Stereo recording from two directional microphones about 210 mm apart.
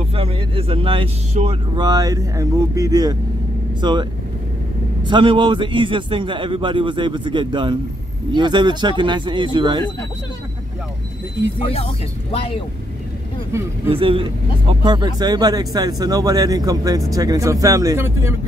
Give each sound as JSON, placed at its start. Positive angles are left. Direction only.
{"t": 0.1, "sound": "a man's voice", "side_deg": -25}
{"t": 1.9, "sound": "a man's voice", "side_deg": -15}
{"t": 13.8, "sound": "speech", "side_deg": -25}